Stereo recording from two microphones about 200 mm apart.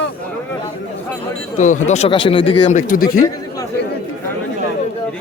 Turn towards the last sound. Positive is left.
turn(degrees=45)  # may be behind; listen again after turning